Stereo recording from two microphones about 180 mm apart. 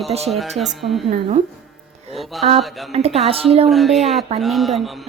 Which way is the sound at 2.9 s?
35° right (ahead or behind).